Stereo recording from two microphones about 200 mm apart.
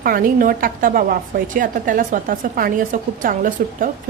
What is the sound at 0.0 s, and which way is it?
A woman's voice, 45° right (ahead or behind).